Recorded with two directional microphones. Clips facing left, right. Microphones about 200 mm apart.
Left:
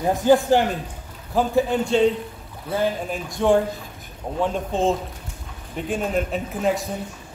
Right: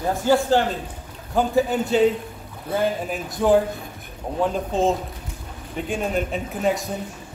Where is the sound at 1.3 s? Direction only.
Centre (ahead or behind).